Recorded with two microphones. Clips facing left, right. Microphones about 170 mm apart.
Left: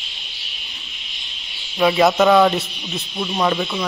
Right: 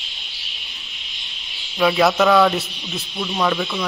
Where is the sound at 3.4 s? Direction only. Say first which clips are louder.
Left 1 dB; 15° left (ahead or behind).